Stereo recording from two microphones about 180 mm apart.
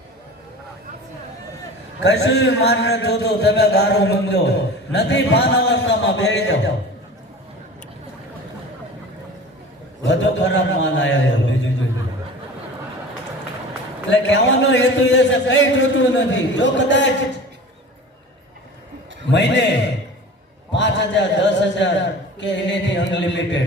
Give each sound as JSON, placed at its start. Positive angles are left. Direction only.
{"t": 2.0, "sound": "a man's voice", "side_deg": 70}
{"t": 10.0, "sound": "a man's voice", "side_deg": 90}
{"t": 14.1, "sound": "a man's voice", "side_deg": 90}
{"t": 19.3, "sound": "a man's voice", "side_deg": 75}
{"t": 20.7, "sound": "a man's voice", "side_deg": 80}